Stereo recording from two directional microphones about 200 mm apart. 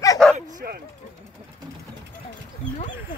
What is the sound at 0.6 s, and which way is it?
Mechanisms, 50° right (ahead or behind).